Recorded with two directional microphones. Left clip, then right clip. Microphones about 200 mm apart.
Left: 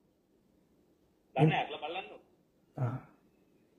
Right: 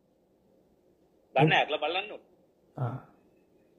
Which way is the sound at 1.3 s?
50° right (ahead or behind).